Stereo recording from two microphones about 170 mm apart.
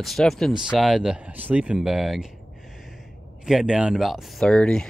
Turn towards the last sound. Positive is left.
turn(degrees=5)  # may be behind; listen again after turning